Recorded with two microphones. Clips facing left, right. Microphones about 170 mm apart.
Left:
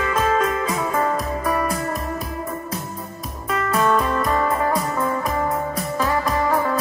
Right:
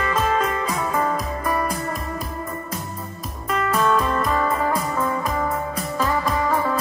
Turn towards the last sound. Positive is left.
turn(degrees=0)  # may be behind; listen again after turning